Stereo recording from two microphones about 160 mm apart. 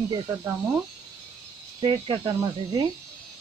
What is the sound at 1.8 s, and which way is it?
Speech, 30° right (ahead or behind).